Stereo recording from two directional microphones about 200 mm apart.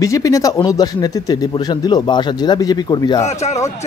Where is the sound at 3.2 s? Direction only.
35° left (ahead or behind).